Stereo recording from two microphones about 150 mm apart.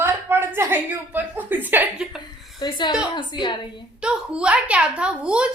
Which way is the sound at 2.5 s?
30° left (ahead or behind).